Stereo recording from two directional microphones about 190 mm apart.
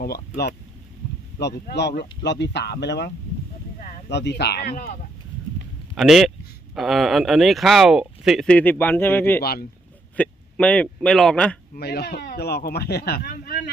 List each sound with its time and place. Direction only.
0.0 s speech: 55° left (ahead or behind)
3.8 s a sound: 45° left (ahead or behind)
4.1 s speech: 65° left (ahead or behind)
5.9 s speech: centre (ahead or behind)
9.4 s speech: 55° left (ahead or behind)
10.2 s speech: 5° left (ahead or behind)
11.8 s speech: 60° left (ahead or behind)